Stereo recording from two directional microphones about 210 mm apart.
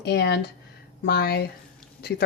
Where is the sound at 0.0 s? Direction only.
50° left (ahead or behind).